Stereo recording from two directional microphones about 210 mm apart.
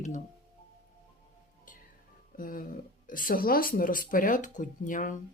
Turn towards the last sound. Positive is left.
turn(degrees=40)  # may be behind; listen again after turning